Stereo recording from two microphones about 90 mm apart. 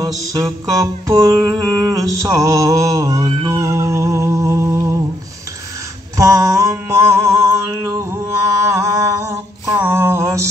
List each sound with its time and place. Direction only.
0.0 s music: 45° right (ahead or behind)
1.5 s mantra: 40° right (ahead or behind)
3.4 s music: 35° right (ahead or behind)
6.1 s a sound: 40° right (ahead or behind)